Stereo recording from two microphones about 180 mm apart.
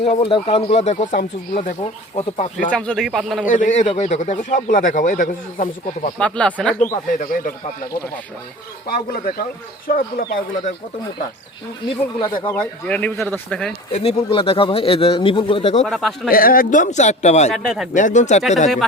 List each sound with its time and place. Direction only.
0.0 s speech: 35° left (ahead or behind)
2.6 s a man's voice: 5° left (ahead or behind)
3.4 s speech: 45° left (ahead or behind)
6.1 s a man's voice: 5° left (ahead or behind)
6.7 s speech: 45° left (ahead or behind)
8.9 s speech: 55° left (ahead or behind)
12.2 s speech: 30° left (ahead or behind)
12.5 s speech: 10° left (ahead or behind)
13.9 s speech: 35° left (ahead or behind)
15.8 s a man's voice: centre (ahead or behind)
16.3 s speech: 50° left (ahead or behind)
17.5 s a man's voice: centre (ahead or behind)
17.9 s speech: 45° left (ahead or behind)